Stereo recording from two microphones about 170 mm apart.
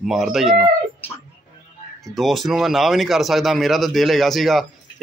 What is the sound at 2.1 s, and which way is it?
Speech, centre (ahead or behind).